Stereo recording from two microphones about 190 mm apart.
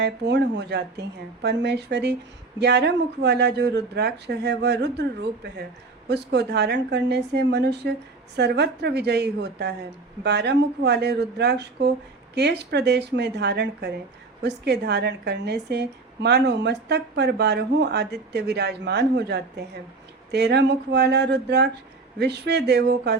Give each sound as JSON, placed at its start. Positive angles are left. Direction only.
{"t": 0.0, "sound": "a woman's voice", "side_deg": -65}